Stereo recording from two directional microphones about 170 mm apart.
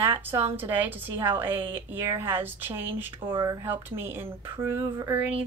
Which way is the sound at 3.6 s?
10° right (ahead or behind).